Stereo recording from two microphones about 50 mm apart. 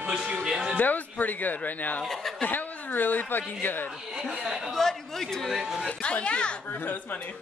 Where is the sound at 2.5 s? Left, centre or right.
Left.